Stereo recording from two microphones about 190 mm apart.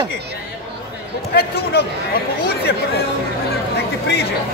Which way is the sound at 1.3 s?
55° left (ahead or behind).